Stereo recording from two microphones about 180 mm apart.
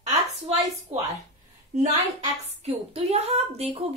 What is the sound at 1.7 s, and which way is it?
A woman's voice, 40° right (ahead or behind).